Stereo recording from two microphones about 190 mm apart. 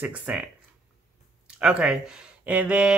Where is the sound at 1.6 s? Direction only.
5° right (ahead or behind).